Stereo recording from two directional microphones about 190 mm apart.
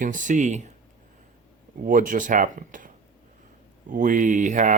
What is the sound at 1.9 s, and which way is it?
Speech, 45° right (ahead or behind).